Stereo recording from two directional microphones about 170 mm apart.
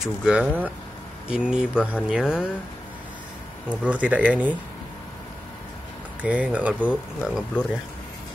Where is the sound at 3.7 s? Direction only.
10° right (ahead or behind).